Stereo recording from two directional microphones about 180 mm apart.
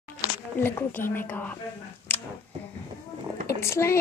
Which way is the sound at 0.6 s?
10° left (ahead or behind).